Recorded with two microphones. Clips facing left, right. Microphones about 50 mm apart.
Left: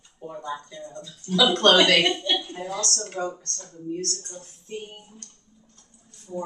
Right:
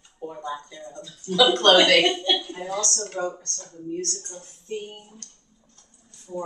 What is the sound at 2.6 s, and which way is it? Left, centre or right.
Speech, centre.